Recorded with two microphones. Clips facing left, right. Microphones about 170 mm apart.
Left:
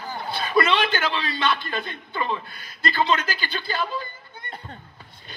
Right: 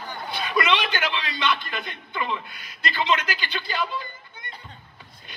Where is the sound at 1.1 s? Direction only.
35° left (ahead or behind).